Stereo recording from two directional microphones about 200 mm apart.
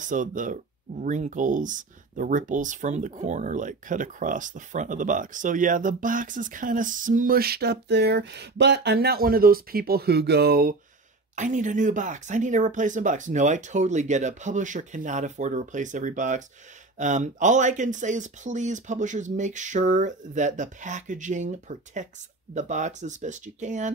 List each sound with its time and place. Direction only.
0.0 s speech: 40° right (ahead or behind)